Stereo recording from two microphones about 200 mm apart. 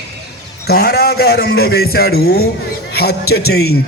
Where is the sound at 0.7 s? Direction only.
50° left (ahead or behind).